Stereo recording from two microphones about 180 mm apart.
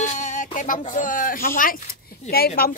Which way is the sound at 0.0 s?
45° left (ahead or behind).